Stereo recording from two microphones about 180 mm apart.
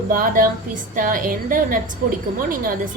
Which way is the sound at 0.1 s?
50° right (ahead or behind).